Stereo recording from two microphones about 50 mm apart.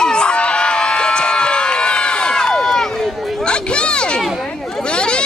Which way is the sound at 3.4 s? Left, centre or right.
Centre.